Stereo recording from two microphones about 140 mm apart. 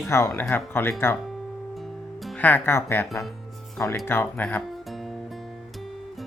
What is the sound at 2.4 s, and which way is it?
Speech, 10° left (ahead or behind).